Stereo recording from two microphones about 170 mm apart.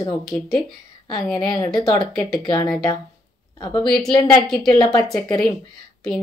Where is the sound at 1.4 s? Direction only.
25° left (ahead or behind).